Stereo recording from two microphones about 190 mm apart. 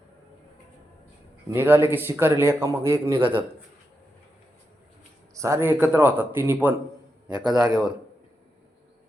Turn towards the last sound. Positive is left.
turn(degrees=-5)  # may be behind; listen again after turning